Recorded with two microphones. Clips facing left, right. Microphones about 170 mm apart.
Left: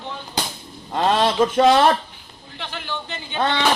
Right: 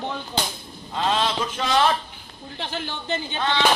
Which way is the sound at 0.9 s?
55° left (ahead or behind).